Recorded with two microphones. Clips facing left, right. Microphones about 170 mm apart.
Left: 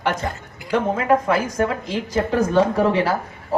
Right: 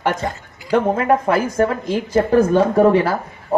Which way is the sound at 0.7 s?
50° right (ahead or behind).